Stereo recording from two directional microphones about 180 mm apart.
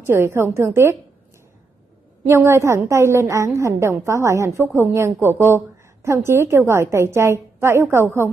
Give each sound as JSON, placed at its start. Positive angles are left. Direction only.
{"t": 0.0, "sound": "a woman's voice", "side_deg": -15}
{"t": 2.2, "sound": "a woman's voice", "side_deg": -15}